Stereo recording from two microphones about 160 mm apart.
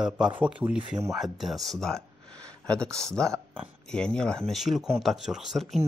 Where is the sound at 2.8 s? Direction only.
15° right (ahead or behind).